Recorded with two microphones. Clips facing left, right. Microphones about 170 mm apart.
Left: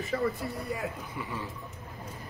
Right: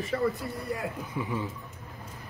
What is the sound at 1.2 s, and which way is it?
Speech, 15° right (ahead or behind).